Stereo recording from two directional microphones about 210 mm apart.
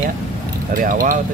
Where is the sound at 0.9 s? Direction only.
40° right (ahead or behind).